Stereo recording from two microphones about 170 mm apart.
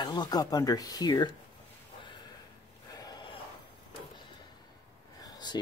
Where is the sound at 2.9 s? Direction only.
20° left (ahead or behind).